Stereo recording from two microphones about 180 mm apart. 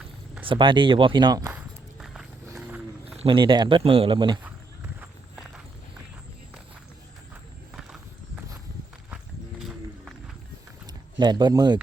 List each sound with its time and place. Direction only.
0.4 s speech: 30° right (ahead or behind)
1.5 s walk: centre (ahead or behind)
2.6 s a sound: 10° right (ahead or behind)
3.2 s speech: 25° right (ahead or behind)
9.6 s run: centre (ahead or behind)
11.2 s speech: 25° right (ahead or behind)